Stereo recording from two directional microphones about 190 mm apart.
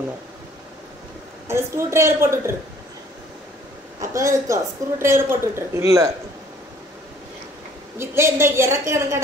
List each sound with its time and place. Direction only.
1.5 s a woman's voice: 15° right (ahead or behind)
4.0 s a woman's voice: 15° right (ahead or behind)
8.0 s a woman's voice: 15° right (ahead or behind)